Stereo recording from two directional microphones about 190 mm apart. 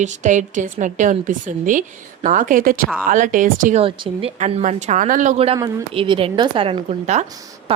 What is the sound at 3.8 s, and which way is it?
A woman's voice, 30° right (ahead or behind).